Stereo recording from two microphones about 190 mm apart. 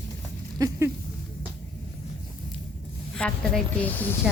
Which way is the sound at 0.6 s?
15° right (ahead or behind).